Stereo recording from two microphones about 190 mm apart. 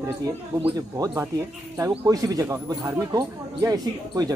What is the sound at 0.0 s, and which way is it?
Speech, 10° right (ahead or behind).